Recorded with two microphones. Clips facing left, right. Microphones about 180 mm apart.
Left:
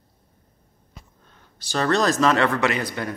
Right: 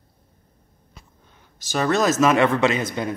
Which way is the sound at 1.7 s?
10° right (ahead or behind).